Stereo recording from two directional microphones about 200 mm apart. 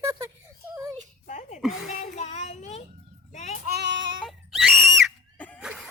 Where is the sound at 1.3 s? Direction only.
35° left (ahead or behind).